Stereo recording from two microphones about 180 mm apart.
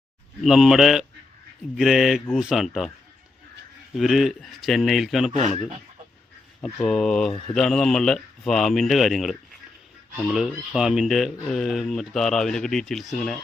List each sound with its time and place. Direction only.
0.4 s speech: centre (ahead or behind)
3.9 s speech: centre (ahead or behind)
5.4 s speech: 35° left (ahead or behind)
6.6 s speech: 5° left (ahead or behind)